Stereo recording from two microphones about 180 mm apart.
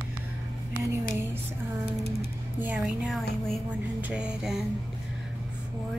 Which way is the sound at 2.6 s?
5° right (ahead or behind).